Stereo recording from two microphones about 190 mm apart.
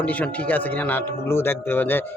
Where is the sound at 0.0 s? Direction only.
10° left (ahead or behind).